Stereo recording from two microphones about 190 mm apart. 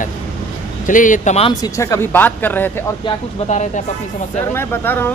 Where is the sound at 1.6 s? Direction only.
15° left (ahead or behind).